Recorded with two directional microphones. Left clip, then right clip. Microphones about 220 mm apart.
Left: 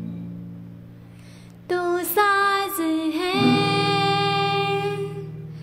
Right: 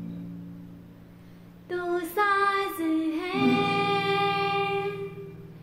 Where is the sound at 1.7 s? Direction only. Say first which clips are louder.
Left 6 dB; 50° left (ahead or behind).